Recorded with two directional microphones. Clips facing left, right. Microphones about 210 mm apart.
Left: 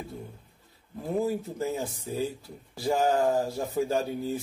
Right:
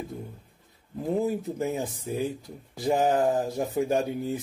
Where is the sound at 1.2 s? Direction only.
15° right (ahead or behind).